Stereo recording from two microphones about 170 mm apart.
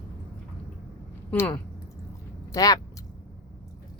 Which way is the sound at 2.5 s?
20° left (ahead or behind).